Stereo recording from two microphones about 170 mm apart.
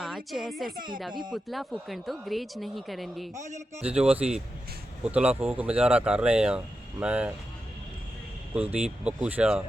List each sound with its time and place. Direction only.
0.3 s speech: centre (ahead or behind)
0.8 s speech: 55° right (ahead or behind)
1.3 s speech: centre (ahead or behind)
3.4 s a man's voice: 45° right (ahead or behind)
3.8 s speech: 5° right (ahead or behind)
8.5 s speech: 10° right (ahead or behind)